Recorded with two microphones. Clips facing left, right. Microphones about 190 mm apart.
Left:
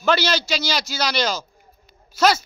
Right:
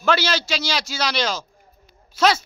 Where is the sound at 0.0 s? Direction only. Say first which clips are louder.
Left 1 dB; 5° right (ahead or behind).